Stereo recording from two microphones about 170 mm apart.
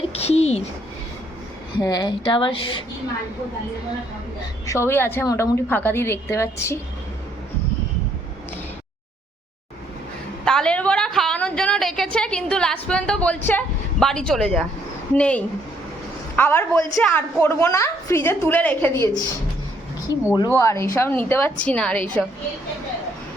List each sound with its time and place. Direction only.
0.1 s a sound: 40° left (ahead or behind)
1.8 s a woman's voice: 25° left (ahead or behind)
4.6 s a woman's voice: 15° left (ahead or behind)
10.4 s a sound: 5° left (ahead or behind)
13.5 s a woman's voice: 5° left (ahead or behind)
20.3 s a woman's voice: 20° left (ahead or behind)